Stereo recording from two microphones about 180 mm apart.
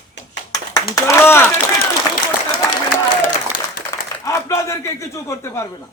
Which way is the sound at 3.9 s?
15° left (ahead or behind).